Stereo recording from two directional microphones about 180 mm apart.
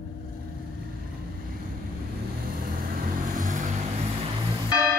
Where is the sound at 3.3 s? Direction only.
45° right (ahead or behind).